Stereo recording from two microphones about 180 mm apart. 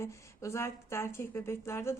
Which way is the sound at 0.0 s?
15° left (ahead or behind).